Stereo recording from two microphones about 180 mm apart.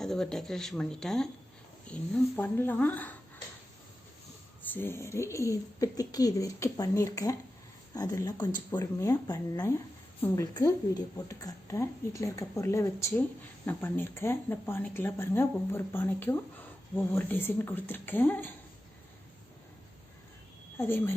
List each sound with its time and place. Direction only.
0.0 s speech: 5° left (ahead or behind)
4.6 s speech: 10° left (ahead or behind)
20.7 s speech: 15° left (ahead or behind)